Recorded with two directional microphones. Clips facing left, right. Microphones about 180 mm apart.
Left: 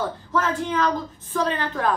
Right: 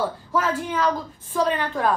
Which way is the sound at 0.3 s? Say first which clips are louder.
Left 2 dB; 10° right (ahead or behind).